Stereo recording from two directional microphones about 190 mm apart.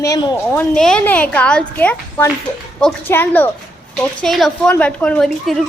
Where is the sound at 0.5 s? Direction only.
5° left (ahead or behind).